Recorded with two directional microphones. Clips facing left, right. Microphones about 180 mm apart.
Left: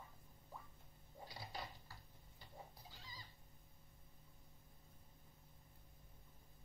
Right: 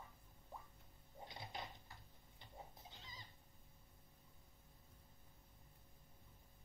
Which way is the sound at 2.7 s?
20° right (ahead or behind).